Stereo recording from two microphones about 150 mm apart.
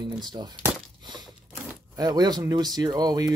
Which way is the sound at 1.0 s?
30° right (ahead or behind).